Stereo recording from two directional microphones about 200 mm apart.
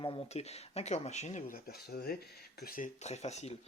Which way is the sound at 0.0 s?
25° left (ahead or behind).